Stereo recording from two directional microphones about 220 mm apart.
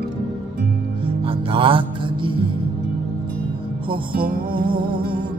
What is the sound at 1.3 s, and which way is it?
Music, 25° right (ahead or behind).